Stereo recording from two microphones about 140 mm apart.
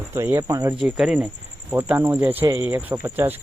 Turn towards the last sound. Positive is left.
turn(degrees=-15)  # may be behind; listen again after turning